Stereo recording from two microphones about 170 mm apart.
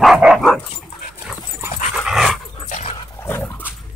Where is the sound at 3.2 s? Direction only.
10° left (ahead or behind).